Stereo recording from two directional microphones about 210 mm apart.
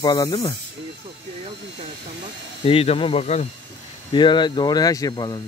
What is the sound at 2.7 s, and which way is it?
Speech, 25° left (ahead or behind).